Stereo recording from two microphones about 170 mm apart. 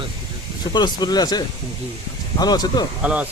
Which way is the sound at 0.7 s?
25° left (ahead or behind).